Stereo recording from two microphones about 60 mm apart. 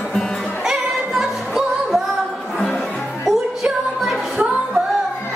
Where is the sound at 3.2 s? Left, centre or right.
Centre.